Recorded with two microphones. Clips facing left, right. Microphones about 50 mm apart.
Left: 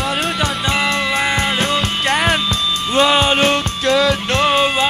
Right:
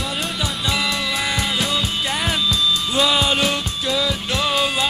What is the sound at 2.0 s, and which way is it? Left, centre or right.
Music, left.